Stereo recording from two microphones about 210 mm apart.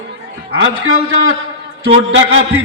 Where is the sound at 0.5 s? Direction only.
70° right (ahead or behind).